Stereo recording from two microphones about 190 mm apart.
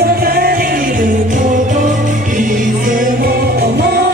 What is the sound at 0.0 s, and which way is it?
Music, 55° right (ahead or behind).